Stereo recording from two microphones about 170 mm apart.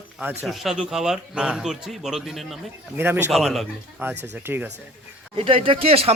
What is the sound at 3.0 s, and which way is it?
Speech, 15° right (ahead or behind).